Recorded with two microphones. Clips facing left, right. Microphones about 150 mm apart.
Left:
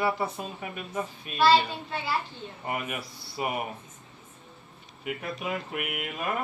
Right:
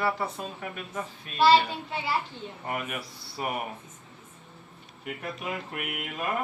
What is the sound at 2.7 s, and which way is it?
Speech, 10° left (ahead or behind).